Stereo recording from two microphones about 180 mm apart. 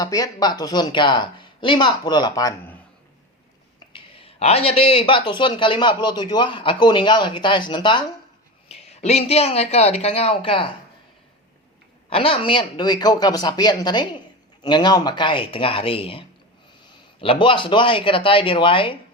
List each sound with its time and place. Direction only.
0.0 s speech: 20° left (ahead or behind)
3.9 s speech: 30° left (ahead or behind)
8.7 s speech: 35° left (ahead or behind)
12.1 s speech: 30° left (ahead or behind)
16.8 s a sound: 30° left (ahead or behind)
17.4 s speech: 25° left (ahead or behind)